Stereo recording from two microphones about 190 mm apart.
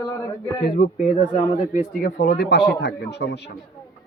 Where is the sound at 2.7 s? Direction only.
65° left (ahead or behind).